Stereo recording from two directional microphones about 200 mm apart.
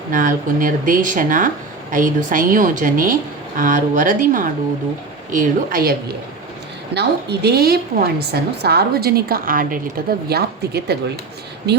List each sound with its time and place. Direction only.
0.1 s a woman's voice: 40° right (ahead or behind)